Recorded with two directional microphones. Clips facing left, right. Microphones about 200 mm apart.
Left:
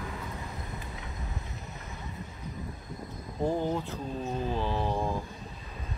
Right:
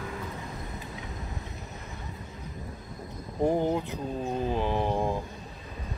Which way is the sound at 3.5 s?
15° right (ahead or behind).